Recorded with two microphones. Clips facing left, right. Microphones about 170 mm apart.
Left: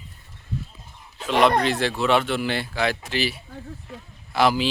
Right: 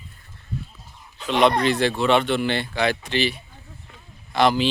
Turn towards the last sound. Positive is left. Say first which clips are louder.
# right 1 dB
turn(degrees=5)  # may be behind; listen again after turning